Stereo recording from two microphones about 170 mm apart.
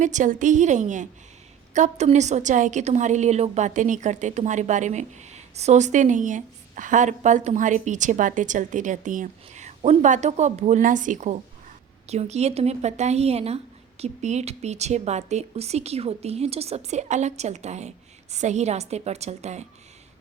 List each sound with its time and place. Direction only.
0.0 s a woman's voice: 45° right (ahead or behind)